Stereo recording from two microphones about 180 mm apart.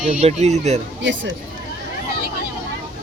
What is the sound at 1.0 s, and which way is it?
Speech, 90° right.